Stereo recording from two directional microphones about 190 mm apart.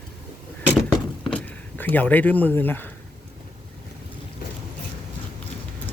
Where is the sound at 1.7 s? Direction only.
10° left (ahead or behind).